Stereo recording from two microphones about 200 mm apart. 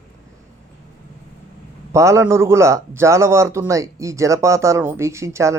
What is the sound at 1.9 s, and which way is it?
Speech, 15° right (ahead or behind).